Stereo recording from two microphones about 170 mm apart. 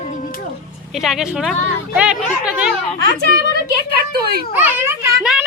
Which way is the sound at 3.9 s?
65° right (ahead or behind).